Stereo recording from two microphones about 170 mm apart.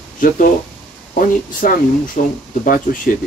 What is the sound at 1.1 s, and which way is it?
Speech, 55° left (ahead or behind).